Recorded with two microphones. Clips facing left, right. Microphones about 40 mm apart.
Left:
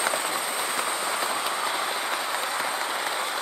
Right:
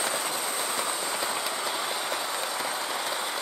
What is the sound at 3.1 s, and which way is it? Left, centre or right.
Vehicle, centre.